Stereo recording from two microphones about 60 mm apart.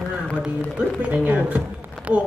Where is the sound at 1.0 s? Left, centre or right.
Right.